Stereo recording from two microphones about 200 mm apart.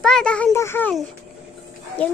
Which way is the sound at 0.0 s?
5° left (ahead or behind).